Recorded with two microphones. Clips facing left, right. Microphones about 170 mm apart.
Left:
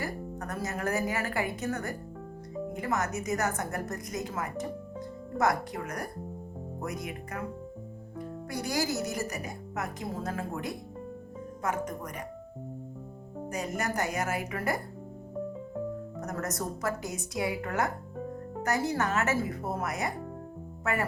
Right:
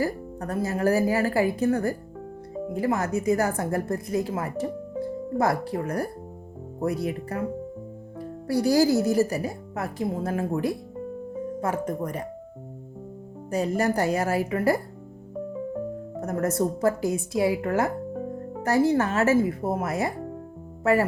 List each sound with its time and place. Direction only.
0.0 s a woman's voice: 30° right (ahead or behind)
13.5 s a woman's voice: 30° right (ahead or behind)
16.2 s a woman's voice: 30° right (ahead or behind)